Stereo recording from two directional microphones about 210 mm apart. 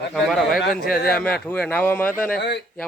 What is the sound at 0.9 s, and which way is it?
Speech, 45° left (ahead or behind).